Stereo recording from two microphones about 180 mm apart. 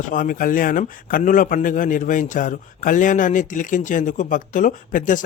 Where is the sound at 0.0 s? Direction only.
45° left (ahead or behind).